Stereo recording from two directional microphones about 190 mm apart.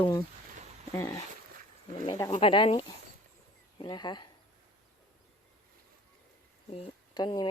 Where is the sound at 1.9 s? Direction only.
30° left (ahead or behind).